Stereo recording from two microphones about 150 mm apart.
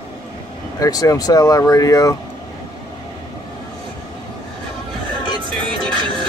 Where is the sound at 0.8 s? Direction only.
25° left (ahead or behind).